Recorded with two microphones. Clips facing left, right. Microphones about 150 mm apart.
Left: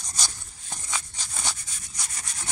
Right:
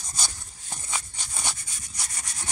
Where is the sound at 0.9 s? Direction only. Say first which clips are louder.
Even; 15° right (ahead or behind).